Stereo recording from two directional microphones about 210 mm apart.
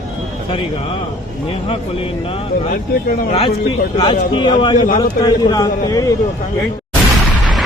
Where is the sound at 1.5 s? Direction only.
25° left (ahead or behind).